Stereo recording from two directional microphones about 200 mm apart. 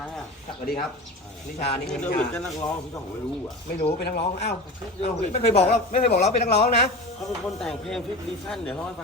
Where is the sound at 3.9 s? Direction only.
55° left (ahead or behind).